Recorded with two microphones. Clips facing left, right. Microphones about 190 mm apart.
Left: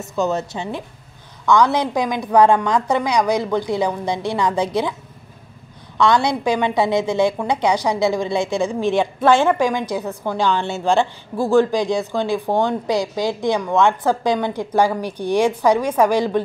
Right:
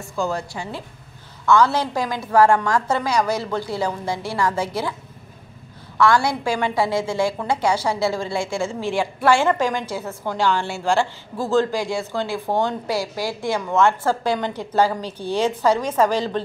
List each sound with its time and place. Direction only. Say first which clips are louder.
0.0 s a woman's voice: left 4 dB; 20° left (ahead or behind)
5.9 s a woman's voice: left 1 dB; 20° left (ahead or behind)